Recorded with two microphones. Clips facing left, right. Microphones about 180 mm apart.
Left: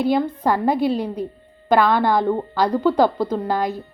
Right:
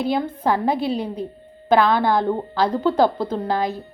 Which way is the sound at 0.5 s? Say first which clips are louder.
Left 3 dB; 10° left (ahead or behind).